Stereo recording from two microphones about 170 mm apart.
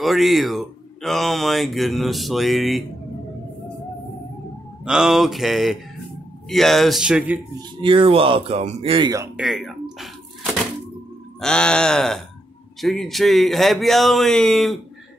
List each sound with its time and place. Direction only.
0.0 s speech: centre (ahead or behind)
4.8 s speech: 5° right (ahead or behind)
7.8 s speech: 30° right (ahead or behind)
9.4 s a sound: centre (ahead or behind)
11.4 s speech: 5° left (ahead or behind)